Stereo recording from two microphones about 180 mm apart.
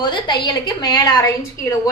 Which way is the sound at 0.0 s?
25° left (ahead or behind).